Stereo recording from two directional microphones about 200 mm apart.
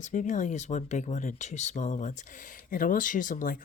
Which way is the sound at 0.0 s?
40° left (ahead or behind).